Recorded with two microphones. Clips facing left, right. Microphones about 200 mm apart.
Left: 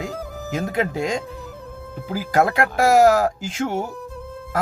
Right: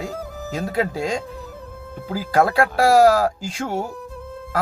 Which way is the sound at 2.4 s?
20° left (ahead or behind).